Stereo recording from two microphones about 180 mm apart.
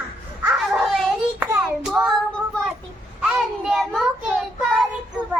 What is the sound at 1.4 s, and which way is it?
Hands, 15° right (ahead or behind).